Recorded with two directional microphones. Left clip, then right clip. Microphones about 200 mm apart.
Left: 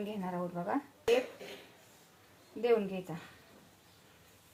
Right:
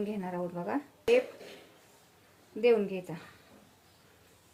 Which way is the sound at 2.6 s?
30° right (ahead or behind).